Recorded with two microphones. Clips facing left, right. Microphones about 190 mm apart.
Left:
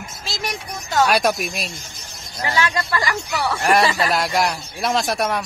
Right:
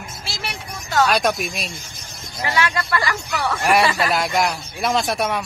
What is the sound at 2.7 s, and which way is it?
Speech, 20° left (ahead or behind).